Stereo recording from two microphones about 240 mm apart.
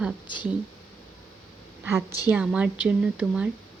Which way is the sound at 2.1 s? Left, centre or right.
Centre.